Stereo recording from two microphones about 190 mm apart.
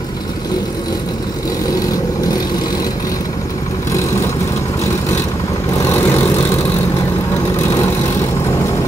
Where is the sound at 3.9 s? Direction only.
15° left (ahead or behind).